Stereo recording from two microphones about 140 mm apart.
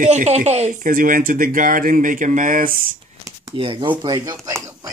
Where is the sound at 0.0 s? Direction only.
55° right (ahead or behind); by 2.8 s 75° right (ahead or behind).